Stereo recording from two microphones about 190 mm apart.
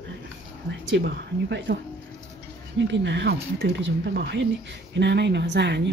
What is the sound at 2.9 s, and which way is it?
Speech, 65° right (ahead or behind).